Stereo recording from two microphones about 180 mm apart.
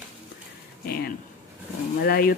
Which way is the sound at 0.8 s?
55° left (ahead or behind).